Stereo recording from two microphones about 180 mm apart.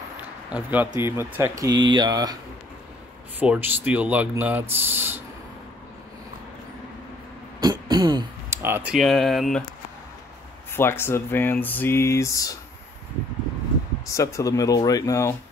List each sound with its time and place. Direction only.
0.2 s a sound: 10° right (ahead or behind)
0.8 s speech: 15° right (ahead or behind)
3.3 s speech: 10° right (ahead or behind)
7.6 s speech: 25° right (ahead or behind); by 9.6 s centre (ahead or behind)
10.7 s speech: 15° left (ahead or behind)
14.0 s speech: 15° left (ahead or behind)